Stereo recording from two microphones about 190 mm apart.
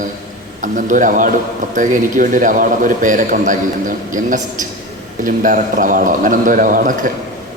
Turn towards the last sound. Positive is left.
turn(degrees=-45)  # may be behind; listen again after turning